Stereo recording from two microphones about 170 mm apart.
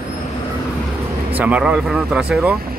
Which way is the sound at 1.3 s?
10° right (ahead or behind).